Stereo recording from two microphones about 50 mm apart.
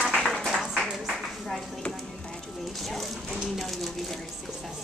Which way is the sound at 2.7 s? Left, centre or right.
Centre.